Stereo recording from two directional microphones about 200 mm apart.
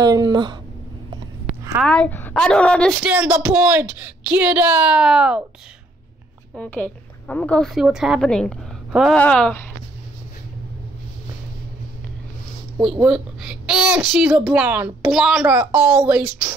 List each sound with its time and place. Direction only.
0.0 s speech: 20° right (ahead or behind)
1.8 s a woman's voice: 5° left (ahead or behind)
3.0 s a woman's voice: 5° right (ahead or behind)
6.5 s a woman's voice: 5° left (ahead or behind)
13.0 s a woman's voice: 5° right (ahead or behind)